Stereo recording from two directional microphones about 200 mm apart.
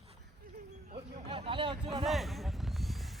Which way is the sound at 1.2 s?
25° right (ahead or behind).